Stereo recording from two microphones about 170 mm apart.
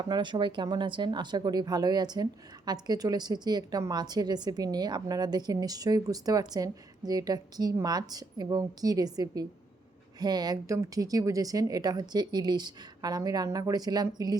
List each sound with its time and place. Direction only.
0.0 s a woman's voice: 25° right (ahead or behind)